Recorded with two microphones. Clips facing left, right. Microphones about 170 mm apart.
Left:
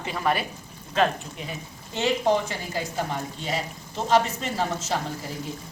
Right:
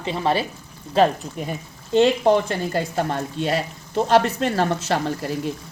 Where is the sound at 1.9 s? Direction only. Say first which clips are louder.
Right 7 dB; 60° right (ahead or behind).